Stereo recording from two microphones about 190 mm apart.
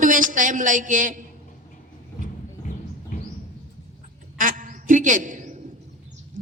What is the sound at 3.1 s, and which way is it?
Music, 45° left (ahead or behind).